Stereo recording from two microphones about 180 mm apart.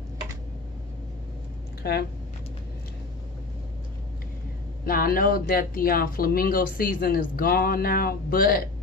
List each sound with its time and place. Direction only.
1.8 s speech: 60° left (ahead or behind)
4.8 s speech: 55° left (ahead or behind)